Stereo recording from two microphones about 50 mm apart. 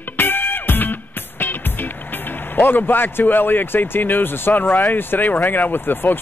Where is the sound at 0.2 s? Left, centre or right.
Left.